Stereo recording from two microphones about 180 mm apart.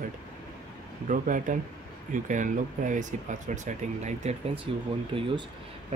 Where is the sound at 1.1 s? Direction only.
45° right (ahead or behind).